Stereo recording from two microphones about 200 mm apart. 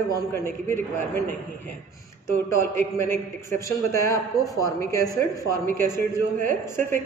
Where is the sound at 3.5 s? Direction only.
15° left (ahead or behind).